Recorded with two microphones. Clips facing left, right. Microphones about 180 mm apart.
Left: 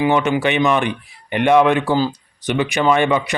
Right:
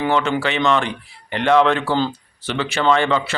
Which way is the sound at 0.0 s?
15° left (ahead or behind).